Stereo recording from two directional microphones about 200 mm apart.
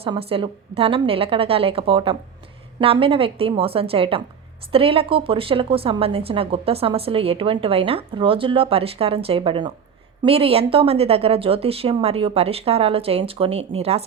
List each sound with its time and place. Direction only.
0.0 s a woman's voice: 30° right (ahead or behind)